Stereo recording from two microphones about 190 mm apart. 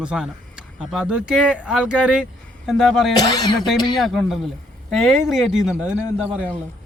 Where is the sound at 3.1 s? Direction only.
20° left (ahead or behind).